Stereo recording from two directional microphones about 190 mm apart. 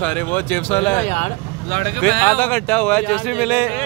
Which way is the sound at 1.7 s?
50° right (ahead or behind).